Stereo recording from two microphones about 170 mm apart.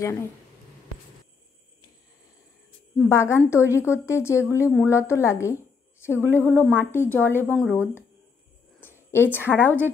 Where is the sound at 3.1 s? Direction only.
15° left (ahead or behind).